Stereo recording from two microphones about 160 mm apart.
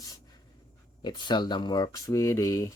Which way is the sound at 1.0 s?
30° left (ahead or behind).